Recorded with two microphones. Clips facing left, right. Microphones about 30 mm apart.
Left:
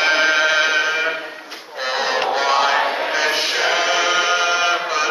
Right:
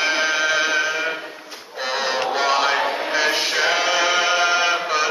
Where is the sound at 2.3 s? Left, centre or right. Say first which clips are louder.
Left 2 dB; centre.